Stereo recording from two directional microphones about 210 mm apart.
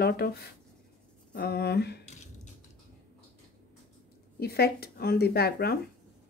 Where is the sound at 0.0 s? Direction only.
50° left (ahead or behind).